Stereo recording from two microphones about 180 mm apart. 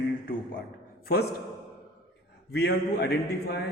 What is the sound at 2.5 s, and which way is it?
A man's voice, 65° left (ahead or behind).